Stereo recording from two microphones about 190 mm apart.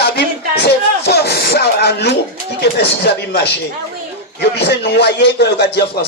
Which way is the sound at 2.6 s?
60° left (ahead or behind).